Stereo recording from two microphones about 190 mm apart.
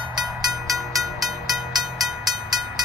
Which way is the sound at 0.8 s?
Centre (ahead or behind).